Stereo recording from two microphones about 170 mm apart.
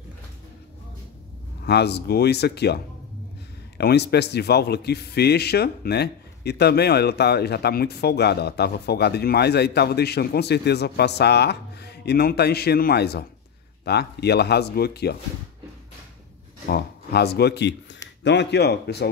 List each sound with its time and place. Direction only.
1.6 s a man's voice: 75° left (ahead or behind)
16.6 s a man's voice: 70° left (ahead or behind)